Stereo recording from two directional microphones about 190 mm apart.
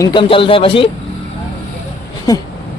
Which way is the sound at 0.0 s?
25° left (ahead or behind).